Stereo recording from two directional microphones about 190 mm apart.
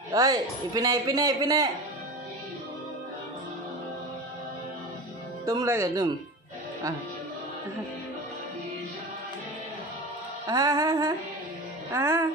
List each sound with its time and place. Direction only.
0.1 s a man's voice: 20° right (ahead or behind)
5.4 s music: 15° right (ahead or behind)
10.4 s music: 20° right (ahead or behind)